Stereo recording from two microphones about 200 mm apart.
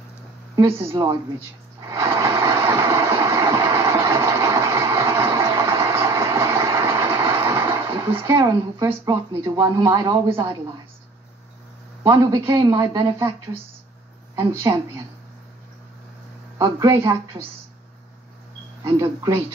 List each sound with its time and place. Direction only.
0.6 s a man's voice: 10° right (ahead or behind)
1.9 s vehicle: 15° right (ahead or behind)
8.2 s a man's voice: 10° right (ahead or behind)
12.1 s a man's voice: 15° right (ahead or behind)
12.5 s a man's voice: 25° right (ahead or behind)
14.7 s speech: 20° right (ahead or behind)
16.5 s a man's voice: 15° right (ahead or behind)
18.9 s a man's voice: 10° right (ahead or behind)